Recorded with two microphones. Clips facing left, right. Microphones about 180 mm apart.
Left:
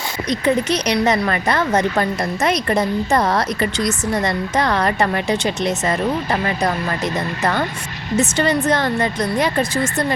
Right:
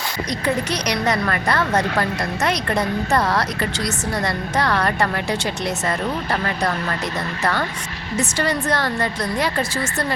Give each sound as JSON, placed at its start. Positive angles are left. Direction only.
{"t": 0.3, "sound": "a woman's voice", "side_deg": 25}
{"t": 8.1, "sound": "a woman's voice", "side_deg": 25}